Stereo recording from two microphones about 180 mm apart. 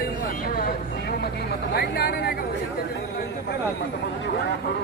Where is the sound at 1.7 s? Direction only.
60° left (ahead or behind).